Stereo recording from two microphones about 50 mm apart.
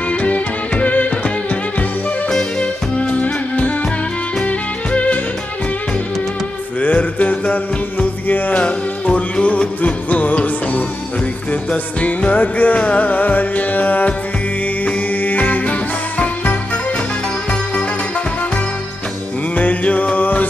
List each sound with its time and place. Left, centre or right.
0.1 s music: left
2.2 s music: centre
3.0 s music: left
6.8 s music: left
19.5 s music: left